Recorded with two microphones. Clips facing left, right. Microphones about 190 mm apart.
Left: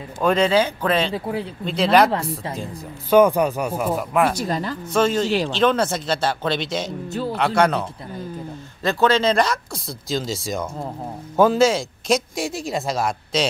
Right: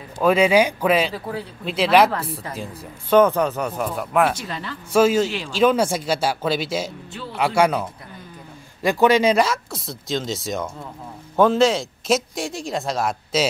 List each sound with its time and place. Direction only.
0.2 s speech: 10° right (ahead or behind)
1.1 s speech: 25° left (ahead or behind)
1.6 s speech: 5° right (ahead or behind)
3.1 s speech: 10° left (ahead or behind)
4.4 s speech: 40° left (ahead or behind)
4.9 s speech: 5° right (ahead or behind)
7.1 s speech: 40° left (ahead or behind)
7.3 s speech: 10° right (ahead or behind)